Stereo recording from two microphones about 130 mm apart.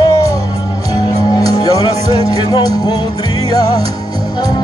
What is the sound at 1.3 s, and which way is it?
Music, 30° left (ahead or behind).